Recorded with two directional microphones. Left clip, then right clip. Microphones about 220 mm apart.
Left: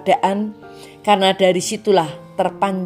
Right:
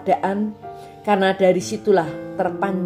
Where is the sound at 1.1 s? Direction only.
25° left (ahead or behind).